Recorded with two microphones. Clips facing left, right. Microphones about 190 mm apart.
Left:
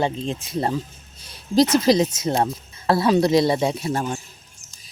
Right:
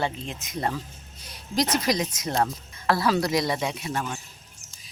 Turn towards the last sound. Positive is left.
turn(degrees=30)  # may be behind; listen again after turning